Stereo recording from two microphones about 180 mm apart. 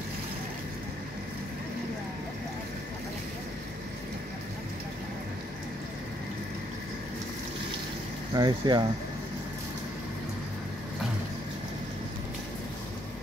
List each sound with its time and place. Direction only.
8.4 s speech: 25° right (ahead or behind)